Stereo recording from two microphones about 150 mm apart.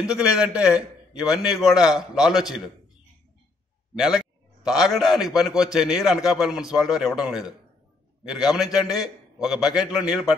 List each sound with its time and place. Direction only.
0.0 s a man's voice: 5° right (ahead or behind)
4.6 s a man's voice: centre (ahead or behind)